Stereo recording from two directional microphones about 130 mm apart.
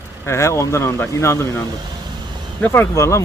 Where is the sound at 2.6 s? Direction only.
15° left (ahead or behind).